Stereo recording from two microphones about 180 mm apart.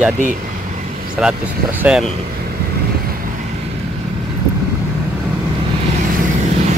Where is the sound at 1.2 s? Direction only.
5° right (ahead or behind).